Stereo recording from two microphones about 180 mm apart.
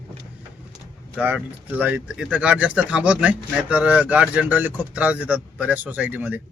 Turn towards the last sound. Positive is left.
turn(degrees=-10)  # may be behind; listen again after turning